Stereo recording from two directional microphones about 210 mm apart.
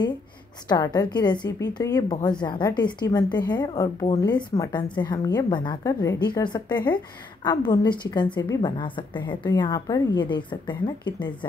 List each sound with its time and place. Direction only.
0.7 s a woman's voice: 20° left (ahead or behind)